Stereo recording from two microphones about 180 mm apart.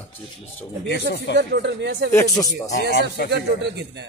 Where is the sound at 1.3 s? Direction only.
70° right (ahead or behind).